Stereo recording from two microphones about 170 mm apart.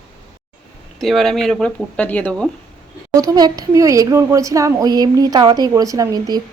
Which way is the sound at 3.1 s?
20° right (ahead or behind).